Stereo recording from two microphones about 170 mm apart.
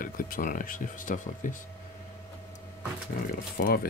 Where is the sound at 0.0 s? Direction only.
55° left (ahead or behind).